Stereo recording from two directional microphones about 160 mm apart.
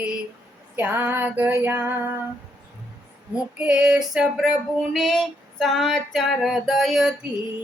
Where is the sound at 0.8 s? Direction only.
10° right (ahead or behind).